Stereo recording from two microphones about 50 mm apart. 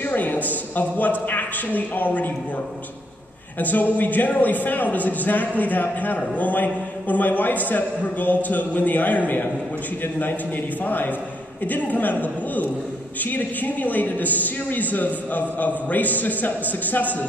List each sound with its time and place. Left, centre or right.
0.0 s a sound: left
1.2 s a man's voice: left
3.5 s a man's voice: left
10.8 s a man's voice: left